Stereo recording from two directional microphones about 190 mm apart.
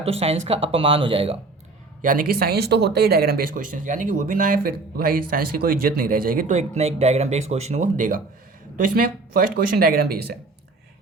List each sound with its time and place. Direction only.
0.0 s speech: 30° right (ahead or behind)
2.0 s speech: 45° right (ahead or behind)